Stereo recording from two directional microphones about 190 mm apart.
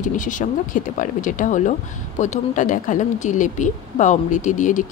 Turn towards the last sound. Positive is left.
turn(degrees=40)  # may be behind; listen again after turning